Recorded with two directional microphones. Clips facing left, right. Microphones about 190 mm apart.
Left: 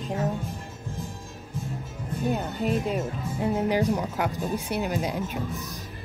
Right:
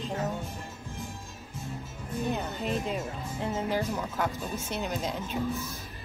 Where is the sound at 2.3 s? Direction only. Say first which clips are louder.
Left 6 dB; 5° left (ahead or behind).